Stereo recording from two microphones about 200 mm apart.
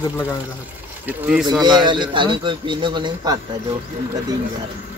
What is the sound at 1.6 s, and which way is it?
A man's voice, 20° right (ahead or behind).